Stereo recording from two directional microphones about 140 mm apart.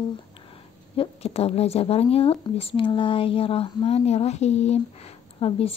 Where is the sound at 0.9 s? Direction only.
45° left (ahead or behind).